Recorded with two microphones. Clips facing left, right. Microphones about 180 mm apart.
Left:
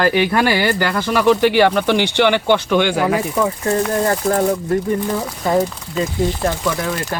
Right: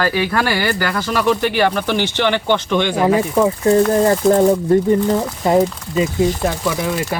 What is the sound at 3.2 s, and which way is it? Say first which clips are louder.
Speech: right 4 dB; 25° right (ahead or behind).